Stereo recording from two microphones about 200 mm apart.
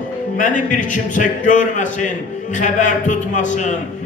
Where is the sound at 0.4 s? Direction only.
40° left (ahead or behind).